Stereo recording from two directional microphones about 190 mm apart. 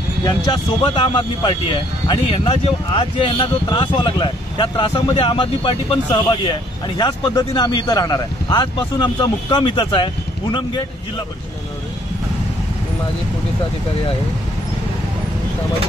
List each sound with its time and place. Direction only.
0.5 s speech: 25° left (ahead or behind)